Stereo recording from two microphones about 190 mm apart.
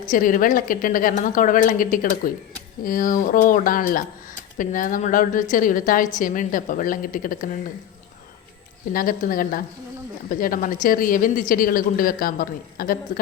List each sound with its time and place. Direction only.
0.1 s a woman's voice: 45° left (ahead or behind)
8.9 s a woman's voice: 50° left (ahead or behind)